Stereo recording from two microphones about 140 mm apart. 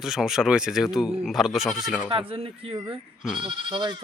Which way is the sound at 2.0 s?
40° right (ahead or behind).